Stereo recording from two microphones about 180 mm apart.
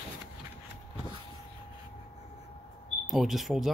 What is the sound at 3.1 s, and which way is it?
Speech, centre (ahead or behind).